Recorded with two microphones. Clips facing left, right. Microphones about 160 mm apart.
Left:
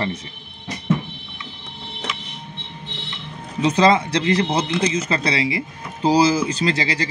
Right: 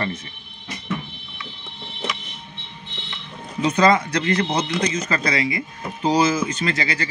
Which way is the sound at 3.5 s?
30° left (ahead or behind).